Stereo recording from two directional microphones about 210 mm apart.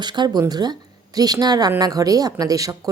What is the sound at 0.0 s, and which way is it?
A woman's voice, 20° right (ahead or behind).